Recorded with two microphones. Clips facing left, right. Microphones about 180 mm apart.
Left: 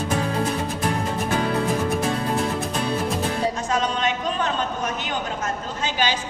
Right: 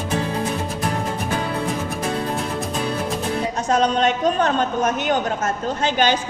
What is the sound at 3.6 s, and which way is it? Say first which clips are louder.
A woman's voice: right 5 dB; 40° right (ahead or behind).